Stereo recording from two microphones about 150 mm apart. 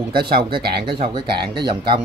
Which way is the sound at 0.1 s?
90° right.